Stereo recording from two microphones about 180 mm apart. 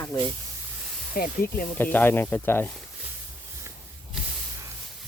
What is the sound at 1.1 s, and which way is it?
Speech, 55° left (ahead or behind).